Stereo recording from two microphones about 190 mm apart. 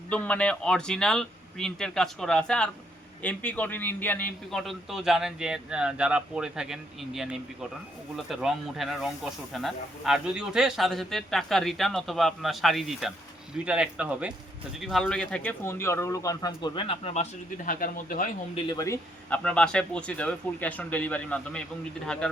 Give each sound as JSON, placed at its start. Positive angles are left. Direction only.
{"t": 0.1, "sound": "speech", "side_deg": 5}
{"t": 17.7, "sound": "speech", "side_deg": 45}
{"t": 18.5, "sound": "speech", "side_deg": 20}
{"t": 19.3, "sound": "speech", "side_deg": 5}